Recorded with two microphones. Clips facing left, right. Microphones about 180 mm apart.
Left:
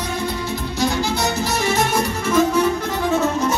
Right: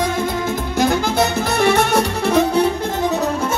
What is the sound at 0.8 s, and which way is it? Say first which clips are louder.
Music: right 4 dB; 55° right (ahead or behind).